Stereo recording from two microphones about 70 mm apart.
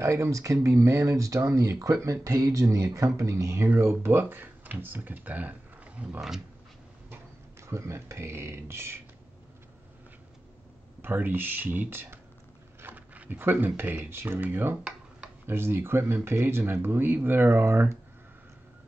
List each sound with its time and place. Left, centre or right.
0.0 s speech: right
7.6 s speech: right
11.0 s speech: right